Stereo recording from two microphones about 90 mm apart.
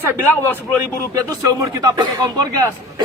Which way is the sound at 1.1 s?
40° right (ahead or behind).